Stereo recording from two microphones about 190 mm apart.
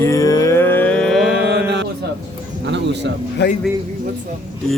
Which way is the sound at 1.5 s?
65° right (ahead or behind).